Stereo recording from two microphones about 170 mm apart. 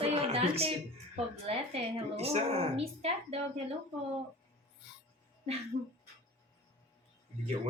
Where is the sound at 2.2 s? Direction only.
35° right (ahead or behind).